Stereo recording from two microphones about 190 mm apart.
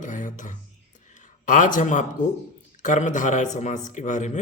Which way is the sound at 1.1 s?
40° left (ahead or behind).